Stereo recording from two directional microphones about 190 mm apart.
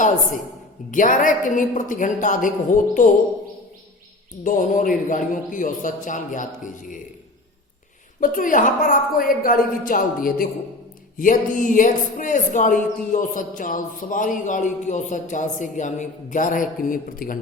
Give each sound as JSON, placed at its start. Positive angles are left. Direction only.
{"t": 0.9, "sound": "speech", "side_deg": 45}
{"t": 4.4, "sound": "speech", "side_deg": 45}
{"t": 8.2, "sound": "speech", "side_deg": 45}